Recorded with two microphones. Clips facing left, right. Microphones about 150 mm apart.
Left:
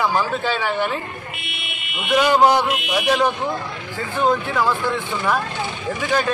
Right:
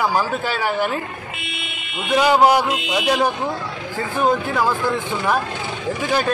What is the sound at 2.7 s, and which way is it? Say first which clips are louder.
Speech: even; 20° right (ahead or behind).